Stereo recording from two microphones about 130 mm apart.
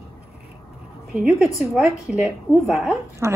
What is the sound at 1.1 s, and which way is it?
A woman's voice, 5° right (ahead or behind).